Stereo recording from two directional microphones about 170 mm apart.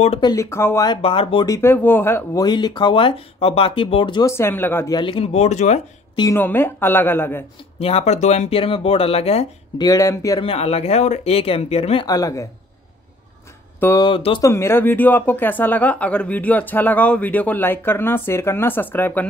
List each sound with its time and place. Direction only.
0.2 s speech: 20° left (ahead or behind)
0.8 s speech: 30° left (ahead or behind)
1.5 s speech: 15° left (ahead or behind)
2.4 s speech: 25° left (ahead or behind)
4.3 s speech: 15° left (ahead or behind)
4.9 s speech: 30° left (ahead or behind)
6.3 s speech: 10° left (ahead or behind)
7.8 s speech: 40° left (ahead or behind)
9.8 s speech: 20° left (ahead or behind)
10.4 s speech: 35° left (ahead or behind)
12.1 s speech: 20° left (ahead or behind)
13.7 s a sound: 15° left (ahead or behind)
14.0 s speech: 30° left (ahead or behind)
14.4 s speech: 15° left (ahead or behind)